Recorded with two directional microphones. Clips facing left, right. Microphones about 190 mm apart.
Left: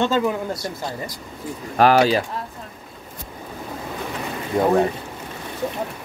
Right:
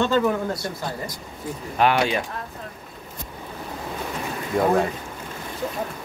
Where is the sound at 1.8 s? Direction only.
35° left (ahead or behind).